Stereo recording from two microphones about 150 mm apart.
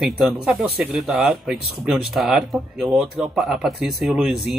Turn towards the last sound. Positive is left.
turn(degrees=0)  # may be behind; listen again after turning